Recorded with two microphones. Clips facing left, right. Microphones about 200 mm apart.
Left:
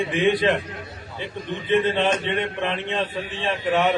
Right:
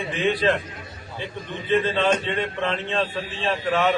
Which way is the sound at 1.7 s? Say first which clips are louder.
Even; 20° left (ahead or behind).